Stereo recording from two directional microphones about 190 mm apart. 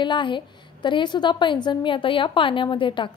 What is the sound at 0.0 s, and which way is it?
A woman's voice, 25° left (ahead or behind).